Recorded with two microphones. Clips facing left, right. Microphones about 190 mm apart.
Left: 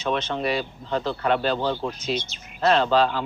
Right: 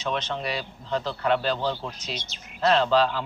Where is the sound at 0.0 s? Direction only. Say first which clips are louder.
Left 4 dB; 50° left (ahead or behind).